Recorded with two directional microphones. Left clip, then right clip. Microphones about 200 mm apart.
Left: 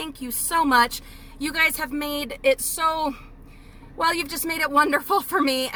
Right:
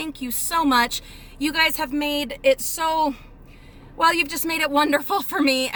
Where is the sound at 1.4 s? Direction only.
5° right (ahead or behind).